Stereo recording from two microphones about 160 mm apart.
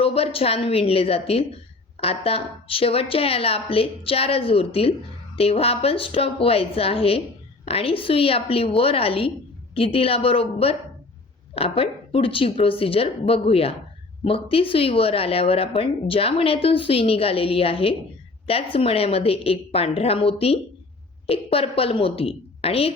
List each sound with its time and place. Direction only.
0.0 s speech: 35° left (ahead or behind)